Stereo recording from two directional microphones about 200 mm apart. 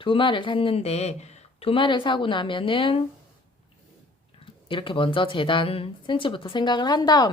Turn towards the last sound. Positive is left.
turn(degrees=20)  # may be behind; listen again after turning